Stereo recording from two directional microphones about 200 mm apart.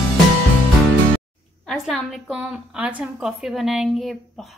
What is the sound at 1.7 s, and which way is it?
A woman's voice, centre (ahead or behind).